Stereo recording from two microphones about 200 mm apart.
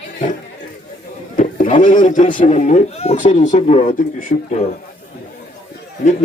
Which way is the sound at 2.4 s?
40° left (ahead or behind).